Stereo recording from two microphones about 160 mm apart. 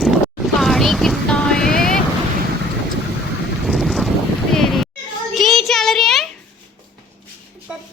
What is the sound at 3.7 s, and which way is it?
Vehicle, centre (ahead or behind).